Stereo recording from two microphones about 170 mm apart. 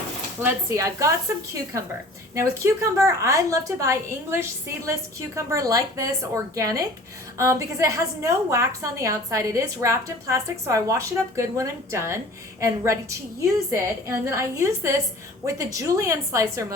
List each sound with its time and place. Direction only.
0.4 s a woman's voice: 20° right (ahead or behind)
2.6 s a woman's voice: 20° right (ahead or behind)